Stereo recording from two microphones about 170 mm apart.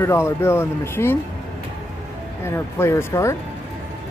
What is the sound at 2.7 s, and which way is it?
Speech, 15° left (ahead or behind).